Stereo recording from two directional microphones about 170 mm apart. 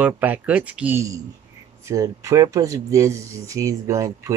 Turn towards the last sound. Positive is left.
turn(degrees=-20)  # may be behind; listen again after turning